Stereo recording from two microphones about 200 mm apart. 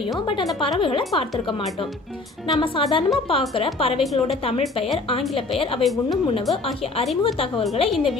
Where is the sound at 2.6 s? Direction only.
25° left (ahead or behind).